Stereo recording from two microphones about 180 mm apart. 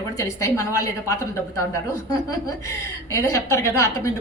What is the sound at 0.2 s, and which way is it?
A woman's voice, 20° left (ahead or behind).